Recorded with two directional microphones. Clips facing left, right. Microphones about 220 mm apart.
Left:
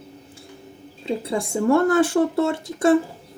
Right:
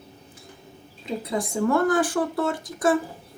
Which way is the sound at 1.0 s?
30° left (ahead or behind).